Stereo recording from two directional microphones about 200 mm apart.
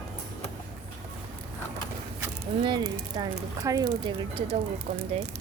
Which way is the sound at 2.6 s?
20° right (ahead or behind).